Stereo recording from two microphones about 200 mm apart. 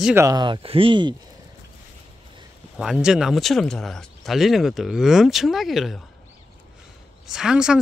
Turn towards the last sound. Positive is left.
turn(degrees=-5)  # may be behind; listen again after turning